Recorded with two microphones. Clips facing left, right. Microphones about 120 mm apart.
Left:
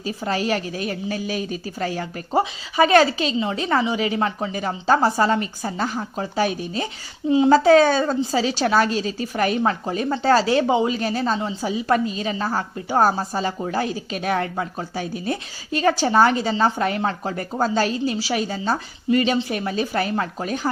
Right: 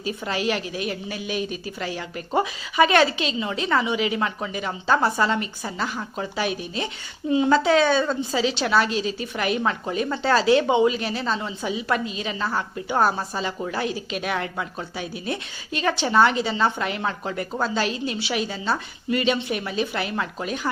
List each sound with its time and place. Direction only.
0.0 s a woman's voice: 35° left (ahead or behind)